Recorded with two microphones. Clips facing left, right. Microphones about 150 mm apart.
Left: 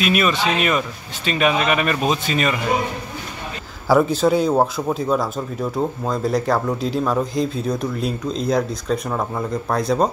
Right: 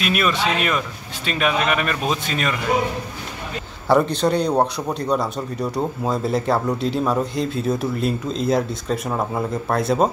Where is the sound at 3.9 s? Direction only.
5° left (ahead or behind).